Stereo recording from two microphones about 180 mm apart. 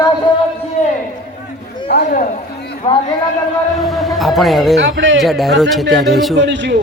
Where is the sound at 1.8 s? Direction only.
55° left (ahead or behind).